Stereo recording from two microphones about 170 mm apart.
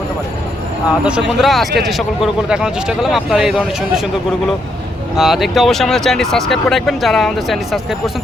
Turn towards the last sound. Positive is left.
turn(degrees=0)  # may be behind; listen again after turning